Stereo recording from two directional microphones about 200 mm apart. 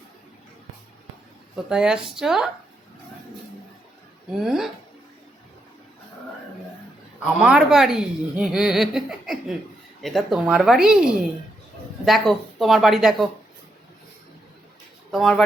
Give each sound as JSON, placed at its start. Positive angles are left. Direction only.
{"t": 1.7, "sound": "speech", "side_deg": -5}
{"t": 4.4, "sound": "speech", "side_deg": 0}
{"t": 7.3, "sound": "speech", "side_deg": -5}
{"t": 15.1, "sound": "speech", "side_deg": 0}